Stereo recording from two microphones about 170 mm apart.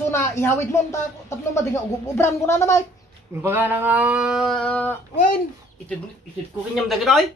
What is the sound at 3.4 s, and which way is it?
Speech, 10° right (ahead or behind).